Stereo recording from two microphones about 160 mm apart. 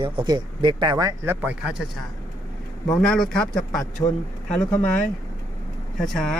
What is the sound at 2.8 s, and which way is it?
Speech, 5° left (ahead or behind).